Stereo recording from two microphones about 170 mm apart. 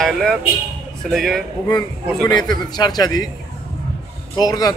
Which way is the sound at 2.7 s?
25° left (ahead or behind).